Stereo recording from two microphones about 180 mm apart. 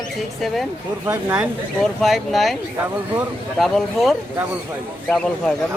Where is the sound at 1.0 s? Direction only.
10° right (ahead or behind).